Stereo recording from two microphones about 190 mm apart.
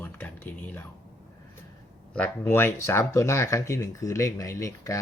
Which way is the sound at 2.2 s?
10° left (ahead or behind).